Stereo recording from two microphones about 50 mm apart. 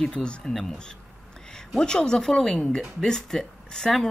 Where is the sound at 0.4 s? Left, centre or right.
Centre.